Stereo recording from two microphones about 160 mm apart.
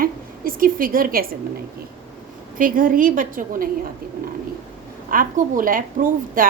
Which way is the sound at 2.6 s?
60° right (ahead or behind).